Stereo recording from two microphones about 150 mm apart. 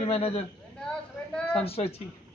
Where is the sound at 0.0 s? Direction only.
40° left (ahead or behind).